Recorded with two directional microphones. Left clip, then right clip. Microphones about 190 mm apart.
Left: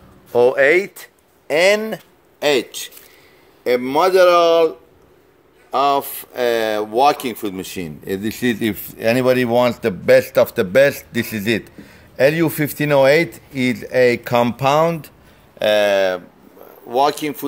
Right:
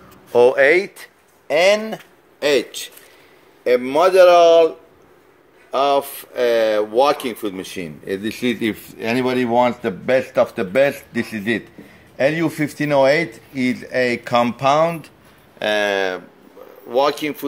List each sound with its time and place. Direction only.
0.3 s speech: centre (ahead or behind)
0.6 s speech: 15° left (ahead or behind)
1.5 s speech: 45° left (ahead or behind)
5.7 s speech: 35° left (ahead or behind)